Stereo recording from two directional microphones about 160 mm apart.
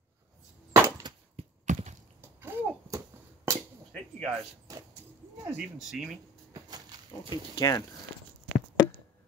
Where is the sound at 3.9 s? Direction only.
5° left (ahead or behind).